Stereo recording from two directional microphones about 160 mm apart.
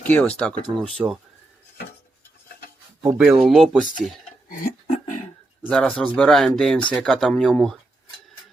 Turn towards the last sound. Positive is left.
turn(degrees=0)  # may be behind; listen again after turning